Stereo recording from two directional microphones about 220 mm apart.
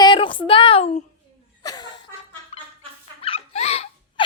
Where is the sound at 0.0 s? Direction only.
20° left (ahead or behind).